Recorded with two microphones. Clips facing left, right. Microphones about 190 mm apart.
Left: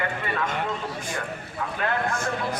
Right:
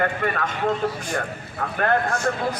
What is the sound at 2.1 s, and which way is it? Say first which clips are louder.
Speech: right 4 dB; 55° left (ahead or behind).